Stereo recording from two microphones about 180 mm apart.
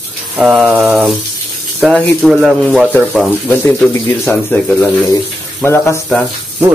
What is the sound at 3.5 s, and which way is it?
Speech, 10° left (ahead or behind).